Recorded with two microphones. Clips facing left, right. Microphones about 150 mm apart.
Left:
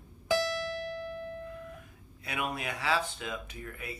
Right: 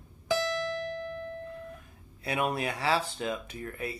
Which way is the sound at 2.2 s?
35° right (ahead or behind).